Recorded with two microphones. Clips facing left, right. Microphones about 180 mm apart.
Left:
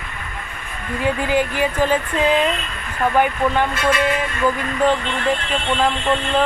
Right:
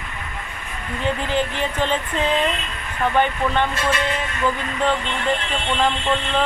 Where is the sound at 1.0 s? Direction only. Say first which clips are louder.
Left 3 dB; 10° left (ahead or behind).